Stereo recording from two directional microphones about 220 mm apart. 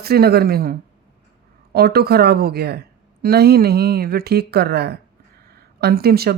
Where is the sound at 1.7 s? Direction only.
45° right (ahead or behind).